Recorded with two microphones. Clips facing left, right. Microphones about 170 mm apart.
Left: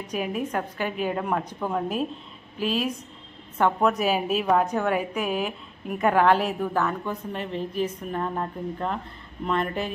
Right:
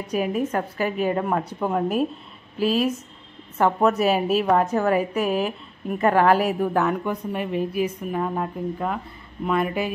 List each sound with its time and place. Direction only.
0.0 s a woman's voice: 5° right (ahead or behind)
2.6 s a woman's voice: 40° right (ahead or behind)
3.5 s a woman's voice: 5° right (ahead or behind)